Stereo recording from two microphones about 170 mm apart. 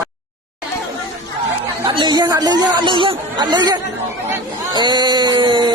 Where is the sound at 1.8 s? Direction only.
25° right (ahead or behind).